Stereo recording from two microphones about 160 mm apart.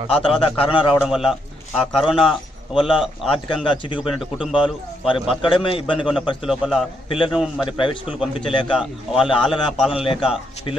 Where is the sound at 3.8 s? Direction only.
30° left (ahead or behind).